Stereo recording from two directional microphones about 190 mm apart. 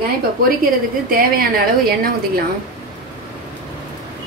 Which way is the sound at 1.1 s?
50° right (ahead or behind).